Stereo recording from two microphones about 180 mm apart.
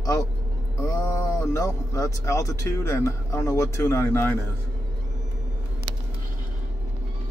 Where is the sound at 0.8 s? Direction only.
15° left (ahead or behind).